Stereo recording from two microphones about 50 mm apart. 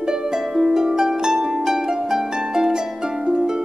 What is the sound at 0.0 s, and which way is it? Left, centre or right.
Harp, centre.